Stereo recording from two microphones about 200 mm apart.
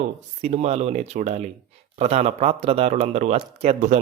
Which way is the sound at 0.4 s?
30° right (ahead or behind).